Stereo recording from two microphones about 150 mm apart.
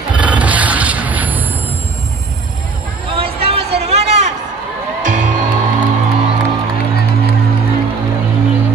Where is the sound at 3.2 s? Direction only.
40° right (ahead or behind).